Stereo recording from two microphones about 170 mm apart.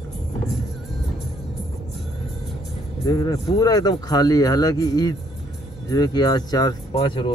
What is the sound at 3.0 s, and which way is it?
Speech, 20° left (ahead or behind).